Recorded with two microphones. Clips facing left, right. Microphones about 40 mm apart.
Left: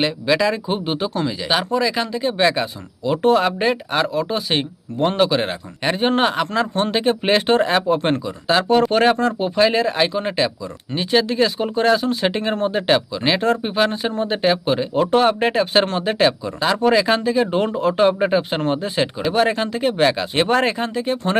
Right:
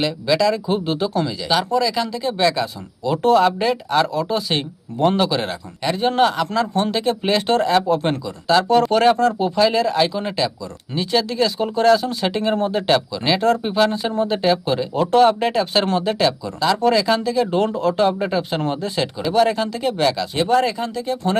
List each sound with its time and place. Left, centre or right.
0.0 s speech: left
5.8 s speech: left
20.3 s speech: left